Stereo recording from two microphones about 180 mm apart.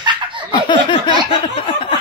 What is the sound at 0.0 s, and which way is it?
Laughter, 25° right (ahead or behind).